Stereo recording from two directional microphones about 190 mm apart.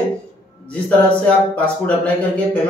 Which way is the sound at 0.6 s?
5° left (ahead or behind).